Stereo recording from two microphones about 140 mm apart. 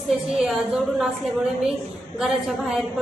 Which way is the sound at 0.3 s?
5° right (ahead or behind).